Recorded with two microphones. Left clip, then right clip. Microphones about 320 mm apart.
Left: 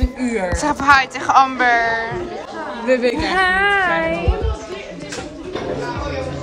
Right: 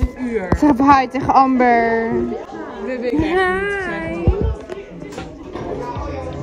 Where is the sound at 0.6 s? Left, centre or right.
Right.